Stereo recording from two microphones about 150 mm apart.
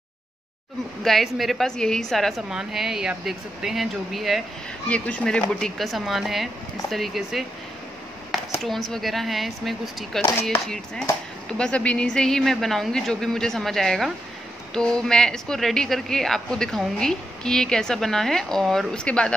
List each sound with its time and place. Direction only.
1.0 s a woman's voice: centre (ahead or behind)
8.6 s a woman's voice: centre (ahead or behind)
11.4 s a woman's voice: 5° left (ahead or behind)